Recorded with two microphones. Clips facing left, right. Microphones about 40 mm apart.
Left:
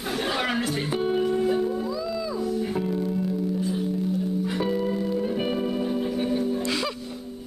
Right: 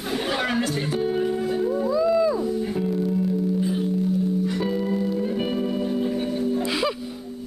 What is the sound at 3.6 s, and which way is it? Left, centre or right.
Singing bowl, centre.